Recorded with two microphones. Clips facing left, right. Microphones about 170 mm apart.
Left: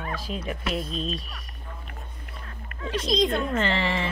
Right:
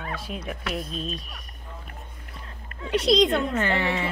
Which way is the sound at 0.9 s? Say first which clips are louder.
Left 2 dB; centre (ahead or behind).